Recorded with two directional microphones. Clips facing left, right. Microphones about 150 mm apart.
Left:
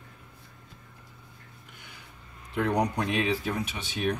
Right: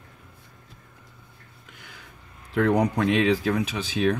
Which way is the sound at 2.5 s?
90° right.